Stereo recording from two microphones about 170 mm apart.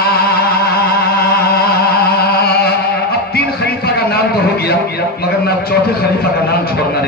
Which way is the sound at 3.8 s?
70° left (ahead or behind).